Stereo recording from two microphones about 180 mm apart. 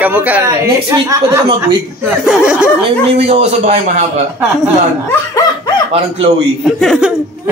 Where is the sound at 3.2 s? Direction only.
35° right (ahead or behind).